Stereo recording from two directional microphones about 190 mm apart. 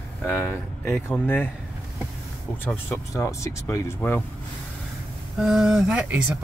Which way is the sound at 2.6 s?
10° left (ahead or behind).